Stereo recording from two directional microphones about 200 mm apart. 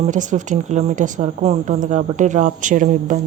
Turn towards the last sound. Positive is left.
turn(degrees=-40)  # may be behind; listen again after turning